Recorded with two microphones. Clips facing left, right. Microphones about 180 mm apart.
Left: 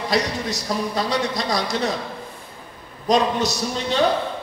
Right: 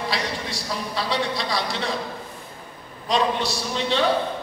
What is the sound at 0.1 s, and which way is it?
A man's voice, 45° left (ahead or behind).